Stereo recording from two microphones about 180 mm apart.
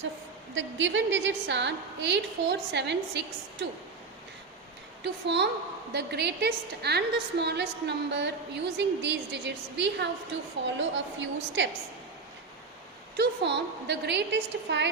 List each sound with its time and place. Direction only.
0.5 s a woman's voice: 90° right; by 3.7 s 75° right (ahead or behind)
5.0 s a woman's voice: 75° right (ahead or behind)
10.8 s a woman's voice: 90° right
13.1 s a woman's voice: 70° right (ahead or behind)